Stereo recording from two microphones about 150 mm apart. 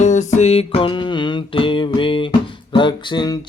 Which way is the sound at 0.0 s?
55° left (ahead or behind).